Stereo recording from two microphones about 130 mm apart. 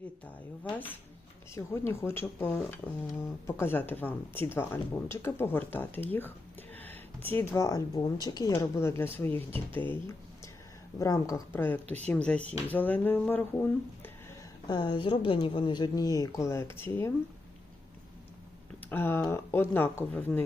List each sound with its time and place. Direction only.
1.5 s speech: 20° left (ahead or behind)
6.7 s a sound: 15° left (ahead or behind)
7.3 s speech: 20° left (ahead or behind)
14.7 s a woman's voice: 35° left (ahead or behind); by 17.1 s 15° left (ahead or behind)
18.9 s speech: 15° left (ahead or behind)